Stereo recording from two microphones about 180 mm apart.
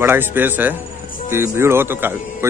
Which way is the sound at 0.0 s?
10° right (ahead or behind).